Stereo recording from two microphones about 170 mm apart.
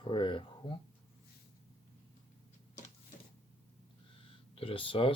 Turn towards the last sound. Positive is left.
turn(degrees=30)  # may be behind; listen again after turning